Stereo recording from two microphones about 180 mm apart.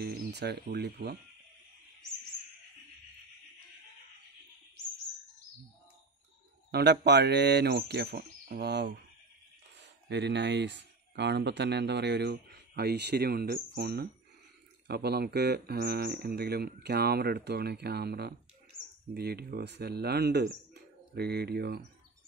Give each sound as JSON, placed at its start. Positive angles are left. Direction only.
{"t": 0.0, "sound": "speech", "side_deg": -65}
{"t": 6.7, "sound": "speech", "side_deg": -70}
{"t": 10.0, "sound": "speech", "side_deg": -70}